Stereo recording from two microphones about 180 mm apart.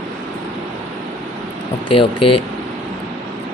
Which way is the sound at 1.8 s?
30° left (ahead or behind).